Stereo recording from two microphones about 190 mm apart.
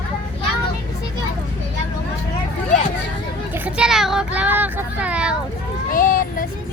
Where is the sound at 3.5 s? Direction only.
5° right (ahead or behind).